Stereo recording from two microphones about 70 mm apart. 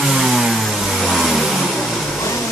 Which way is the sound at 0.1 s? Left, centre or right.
Centre.